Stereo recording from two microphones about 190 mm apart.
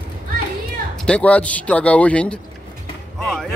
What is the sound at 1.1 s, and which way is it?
A man's voice, 5° left (ahead or behind).